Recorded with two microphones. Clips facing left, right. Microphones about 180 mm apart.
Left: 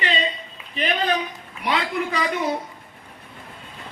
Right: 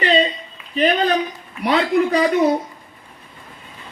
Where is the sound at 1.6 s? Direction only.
40° right (ahead or behind).